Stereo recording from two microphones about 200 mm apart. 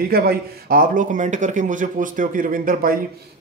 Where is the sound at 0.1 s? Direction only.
50° right (ahead or behind).